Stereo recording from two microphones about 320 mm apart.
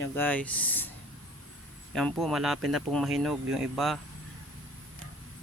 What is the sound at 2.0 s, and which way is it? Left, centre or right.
Speech, centre.